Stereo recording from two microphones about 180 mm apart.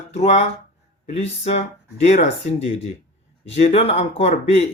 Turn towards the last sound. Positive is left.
turn(degrees=35)  # may be behind; listen again after turning